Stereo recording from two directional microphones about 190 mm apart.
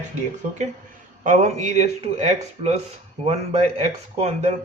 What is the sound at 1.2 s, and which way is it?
Speech, 40° right (ahead or behind).